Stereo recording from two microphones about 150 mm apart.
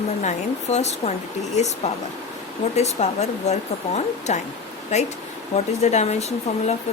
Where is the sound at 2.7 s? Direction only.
50° left (ahead or behind).